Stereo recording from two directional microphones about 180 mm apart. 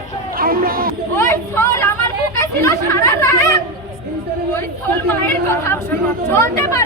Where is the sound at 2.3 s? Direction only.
15° left (ahead or behind).